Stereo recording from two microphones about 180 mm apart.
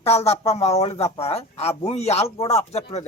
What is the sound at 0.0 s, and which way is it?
A man's voice, 35° left (ahead or behind).